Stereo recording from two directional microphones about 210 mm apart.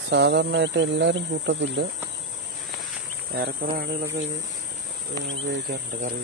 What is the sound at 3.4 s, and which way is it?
Speech, 50° right (ahead or behind).